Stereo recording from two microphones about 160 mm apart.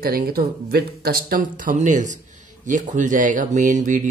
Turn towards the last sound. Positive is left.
turn(degrees=-50)  # may be behind; listen again after turning